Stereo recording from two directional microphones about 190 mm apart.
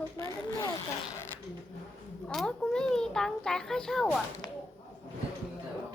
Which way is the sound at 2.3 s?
5° left (ahead or behind).